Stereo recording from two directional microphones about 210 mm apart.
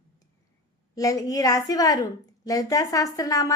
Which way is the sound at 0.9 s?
15° left (ahead or behind).